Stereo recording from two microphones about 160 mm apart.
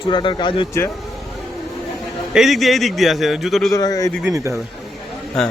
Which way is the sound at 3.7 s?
20° left (ahead or behind).